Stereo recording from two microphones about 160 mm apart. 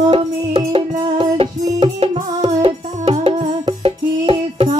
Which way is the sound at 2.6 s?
40° right (ahead or behind).